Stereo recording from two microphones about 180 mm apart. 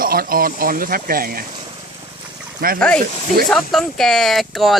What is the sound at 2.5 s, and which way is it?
Speech, 55° right (ahead or behind).